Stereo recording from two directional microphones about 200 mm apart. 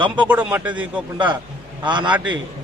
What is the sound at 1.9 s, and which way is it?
Speech, 20° right (ahead or behind).